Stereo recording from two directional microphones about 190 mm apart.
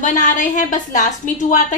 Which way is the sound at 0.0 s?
40° left (ahead or behind).